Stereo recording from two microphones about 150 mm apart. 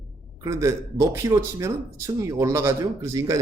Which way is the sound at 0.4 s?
20° right (ahead or behind).